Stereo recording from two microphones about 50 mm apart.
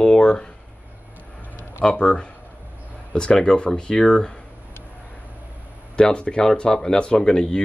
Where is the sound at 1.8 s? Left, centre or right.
Left.